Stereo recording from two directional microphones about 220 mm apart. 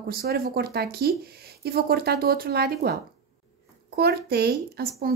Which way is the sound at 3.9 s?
45° right (ahead or behind).